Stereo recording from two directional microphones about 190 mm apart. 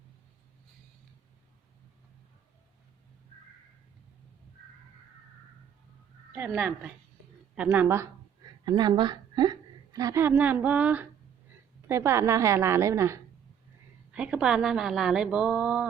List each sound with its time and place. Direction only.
6.3 s a woman's voice: 10° right (ahead or behind)
8.6 s a woman's voice: 20° right (ahead or behind); by 15.9 s 5° right (ahead or behind)